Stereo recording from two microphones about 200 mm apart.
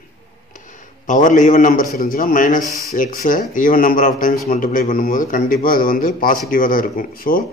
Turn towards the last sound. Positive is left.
turn(degrees=45)  # may be behind; listen again after turning